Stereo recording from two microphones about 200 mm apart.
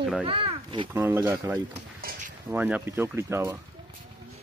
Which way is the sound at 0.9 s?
10° right (ahead or behind).